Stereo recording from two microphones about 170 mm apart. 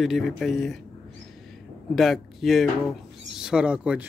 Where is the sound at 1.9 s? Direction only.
Centre (ahead or behind).